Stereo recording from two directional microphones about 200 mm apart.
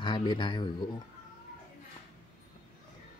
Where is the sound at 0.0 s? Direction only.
25° left (ahead or behind).